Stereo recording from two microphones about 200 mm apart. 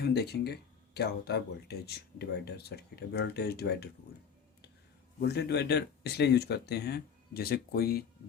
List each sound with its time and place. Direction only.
0.0 s speech: 55° left (ahead or behind)
5.2 s speech: 55° left (ahead or behind)